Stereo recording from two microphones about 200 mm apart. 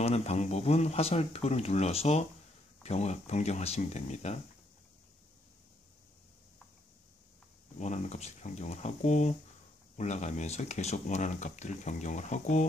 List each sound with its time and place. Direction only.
0.0 s speech: 30° left (ahead or behind)
7.8 s speech: 35° left (ahead or behind)